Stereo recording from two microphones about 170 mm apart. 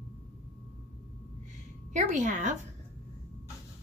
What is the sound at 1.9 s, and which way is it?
Speech, 45° right (ahead or behind).